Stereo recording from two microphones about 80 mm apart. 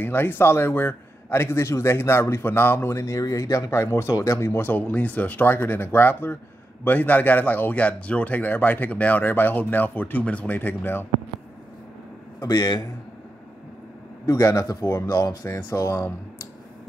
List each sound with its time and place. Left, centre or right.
0.0 s a man's voice: left
12.4 s a man's voice: left
14.2 s a man's voice: left
15.4 s a man's voice: left